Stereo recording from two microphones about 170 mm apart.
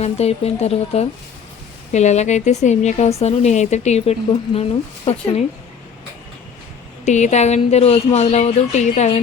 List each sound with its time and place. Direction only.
0.0 s speech: 40° left (ahead or behind)
7.0 s speech: 45° left (ahead or behind)